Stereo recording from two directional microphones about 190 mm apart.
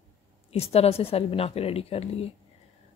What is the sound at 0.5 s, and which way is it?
A woman's voice, 35° left (ahead or behind).